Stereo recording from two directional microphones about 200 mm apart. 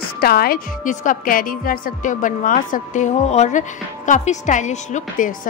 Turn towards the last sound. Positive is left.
turn(degrees=40)  # may be behind; listen again after turning